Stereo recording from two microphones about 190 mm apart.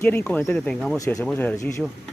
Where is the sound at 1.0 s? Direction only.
15° left (ahead or behind).